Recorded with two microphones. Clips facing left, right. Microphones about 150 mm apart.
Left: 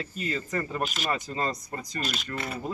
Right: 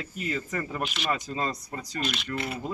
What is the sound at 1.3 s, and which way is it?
Speech, 10° right (ahead or behind).